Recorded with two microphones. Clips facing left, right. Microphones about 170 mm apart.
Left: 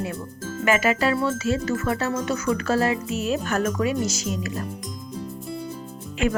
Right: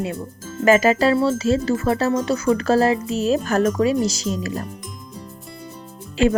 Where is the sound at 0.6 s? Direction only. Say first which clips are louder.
Right 6 dB; 35° right (ahead or behind).